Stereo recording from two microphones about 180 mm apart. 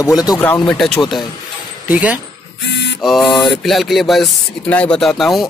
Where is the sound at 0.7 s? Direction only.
5° left (ahead or behind).